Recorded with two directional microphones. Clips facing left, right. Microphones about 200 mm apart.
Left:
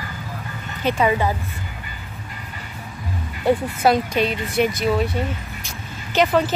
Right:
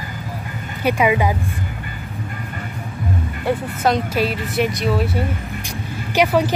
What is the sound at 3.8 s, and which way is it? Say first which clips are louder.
Speech: left 1 dB; 5° left (ahead or behind).